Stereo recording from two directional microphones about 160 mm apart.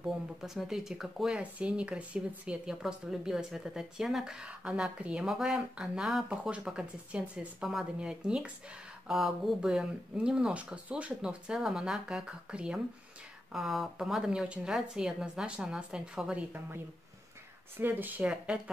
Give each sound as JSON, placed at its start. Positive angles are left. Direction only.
{"t": 0.0, "sound": "speech", "side_deg": 0}